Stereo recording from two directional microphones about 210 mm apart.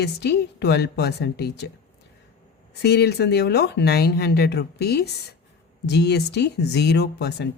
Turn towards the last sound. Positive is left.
turn(degrees=50)  # may be behind; listen again after turning